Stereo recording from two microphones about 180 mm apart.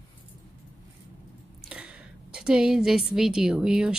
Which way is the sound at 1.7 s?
5° right (ahead or behind).